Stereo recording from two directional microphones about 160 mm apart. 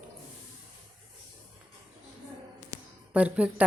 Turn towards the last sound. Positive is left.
turn(degrees=-10)  # may be behind; listen again after turning